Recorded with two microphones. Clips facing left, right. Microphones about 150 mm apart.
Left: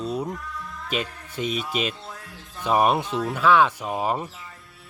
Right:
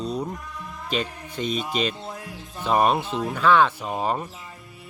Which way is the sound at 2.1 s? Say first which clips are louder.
Right 4 dB; 10° right (ahead or behind).